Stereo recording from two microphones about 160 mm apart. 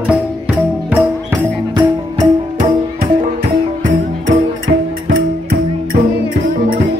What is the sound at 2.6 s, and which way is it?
Music, 45° right (ahead or behind).